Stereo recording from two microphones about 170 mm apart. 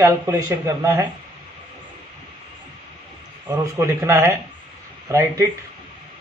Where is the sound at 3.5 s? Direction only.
15° right (ahead or behind).